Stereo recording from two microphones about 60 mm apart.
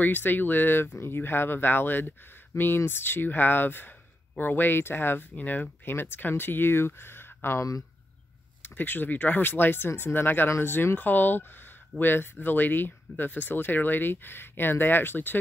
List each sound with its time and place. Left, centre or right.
0.0 s speech: left
8.6 s speech: left